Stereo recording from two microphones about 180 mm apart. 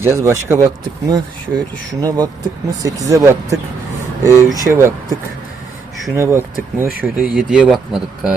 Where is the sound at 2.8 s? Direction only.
20° right (ahead or behind).